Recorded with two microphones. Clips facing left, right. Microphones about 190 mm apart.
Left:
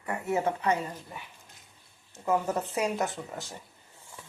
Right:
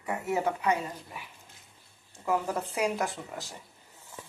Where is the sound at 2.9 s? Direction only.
Centre (ahead or behind).